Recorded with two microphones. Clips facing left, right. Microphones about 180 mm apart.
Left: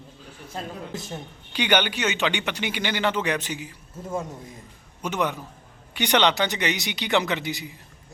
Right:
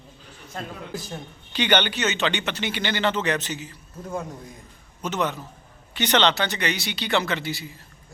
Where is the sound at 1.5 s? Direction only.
10° left (ahead or behind).